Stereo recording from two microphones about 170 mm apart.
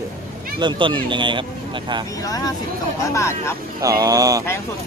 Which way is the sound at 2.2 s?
20° left (ahead or behind).